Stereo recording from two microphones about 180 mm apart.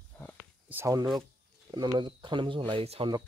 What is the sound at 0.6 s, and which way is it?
Speech, 15° right (ahead or behind).